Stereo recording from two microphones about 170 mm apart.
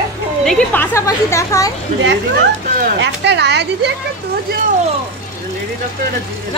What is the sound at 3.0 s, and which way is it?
Speech, 90° right.